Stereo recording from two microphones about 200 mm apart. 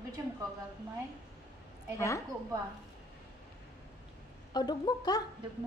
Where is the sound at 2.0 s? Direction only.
15° left (ahead or behind).